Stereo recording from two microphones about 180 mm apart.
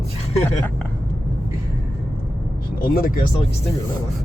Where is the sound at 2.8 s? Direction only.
55° left (ahead or behind).